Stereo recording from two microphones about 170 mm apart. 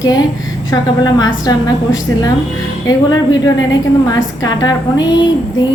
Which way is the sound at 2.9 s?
25° left (ahead or behind).